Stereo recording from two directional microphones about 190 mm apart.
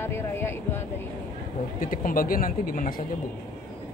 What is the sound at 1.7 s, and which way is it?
Speech, 45° left (ahead or behind).